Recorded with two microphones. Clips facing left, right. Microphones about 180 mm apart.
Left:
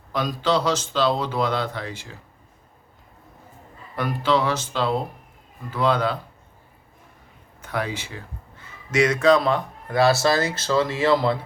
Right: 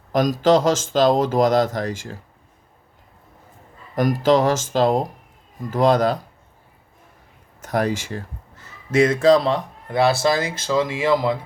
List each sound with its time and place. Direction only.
0.1 s speech: 45° right (ahead or behind)
3.9 s speech: 40° right (ahead or behind)
7.6 s speech: 40° right (ahead or behind); by 11.3 s 10° right (ahead or behind)